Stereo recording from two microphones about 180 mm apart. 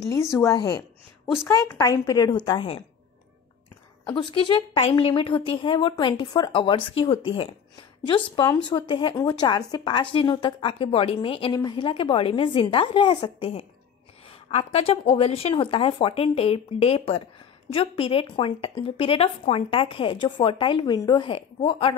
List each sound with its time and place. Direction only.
0.0 s a woman's voice: 15° left (ahead or behind)
4.0 s speech: 25° left (ahead or behind)